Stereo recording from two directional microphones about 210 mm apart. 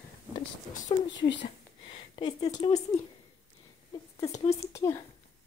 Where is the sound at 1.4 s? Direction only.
25° left (ahead or behind).